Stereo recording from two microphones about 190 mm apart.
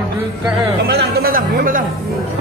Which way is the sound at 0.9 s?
55° right (ahead or behind).